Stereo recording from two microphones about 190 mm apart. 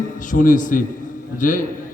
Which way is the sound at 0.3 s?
45° left (ahead or behind).